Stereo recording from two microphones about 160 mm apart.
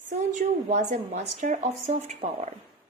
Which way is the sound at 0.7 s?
45° right (ahead or behind).